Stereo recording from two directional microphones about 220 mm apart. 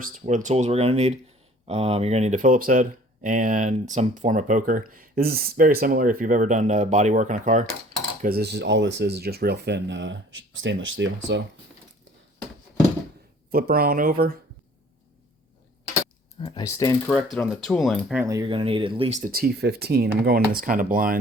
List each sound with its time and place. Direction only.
0.0 s speech: 35° right (ahead or behind)
8.2 s speech: 45° right (ahead or behind)
13.5 s speech: 40° right (ahead or behind)
16.4 s speech: 20° left (ahead or behind)
17.1 s speech: 5° left (ahead or behind); by 21.2 s 40° right (ahead or behind)